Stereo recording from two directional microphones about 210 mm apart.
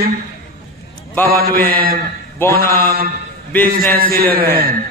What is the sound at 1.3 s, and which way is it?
A man's voice, 45° right (ahead or behind).